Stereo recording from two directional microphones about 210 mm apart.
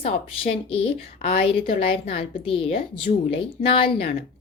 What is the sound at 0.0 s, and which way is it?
A woman's voice, 30° left (ahead or behind).